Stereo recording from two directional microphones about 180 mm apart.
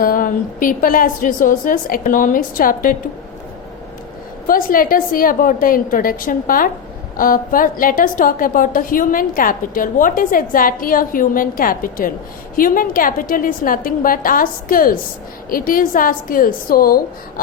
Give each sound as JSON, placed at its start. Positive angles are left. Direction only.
{"t": 0.0, "sound": "a woman's voice", "side_deg": 50}
{"t": 4.4, "sound": "a woman's voice", "side_deg": 50}